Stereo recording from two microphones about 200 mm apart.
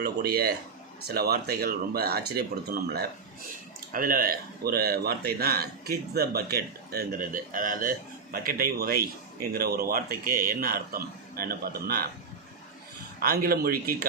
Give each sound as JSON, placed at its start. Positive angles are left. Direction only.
{"t": 0.0, "sound": "speech", "side_deg": -50}
{"t": 13.1, "sound": "speech", "side_deg": -50}